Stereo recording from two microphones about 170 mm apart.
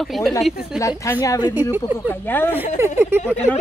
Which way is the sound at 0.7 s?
15° left (ahead or behind).